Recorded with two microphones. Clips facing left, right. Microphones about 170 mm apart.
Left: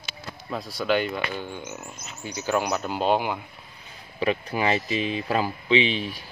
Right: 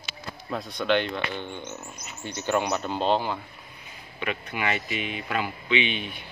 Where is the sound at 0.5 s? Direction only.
Centre (ahead or behind).